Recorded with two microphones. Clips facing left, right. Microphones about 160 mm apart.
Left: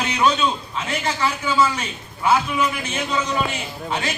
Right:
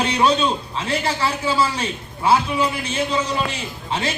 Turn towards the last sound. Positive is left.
turn(degrees=-30)  # may be behind; listen again after turning